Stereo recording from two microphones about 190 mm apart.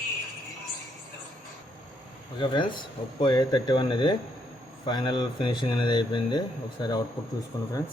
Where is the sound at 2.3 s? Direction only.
25° left (ahead or behind).